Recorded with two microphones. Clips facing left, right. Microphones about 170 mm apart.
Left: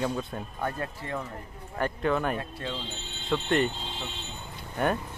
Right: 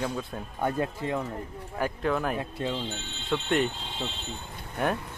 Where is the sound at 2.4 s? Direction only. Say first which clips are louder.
Right 4 dB; 20° right (ahead or behind).